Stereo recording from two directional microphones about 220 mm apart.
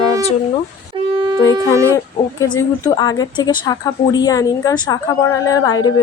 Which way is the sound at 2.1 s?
15° left (ahead or behind).